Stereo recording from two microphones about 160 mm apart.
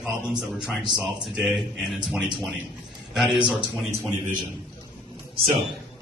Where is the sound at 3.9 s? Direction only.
15° right (ahead or behind).